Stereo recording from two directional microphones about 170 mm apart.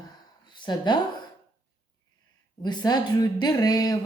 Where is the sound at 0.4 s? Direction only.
25° left (ahead or behind).